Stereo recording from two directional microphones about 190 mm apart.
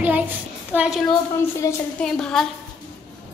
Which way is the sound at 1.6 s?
15° left (ahead or behind).